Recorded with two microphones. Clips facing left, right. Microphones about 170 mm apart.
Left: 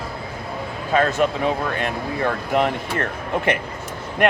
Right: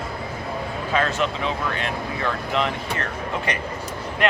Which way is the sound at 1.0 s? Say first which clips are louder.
Left 5 dB; 45° left (ahead or behind).